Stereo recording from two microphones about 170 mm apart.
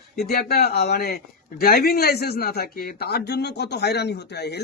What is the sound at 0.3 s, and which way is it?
A man's voice, 65° left (ahead or behind).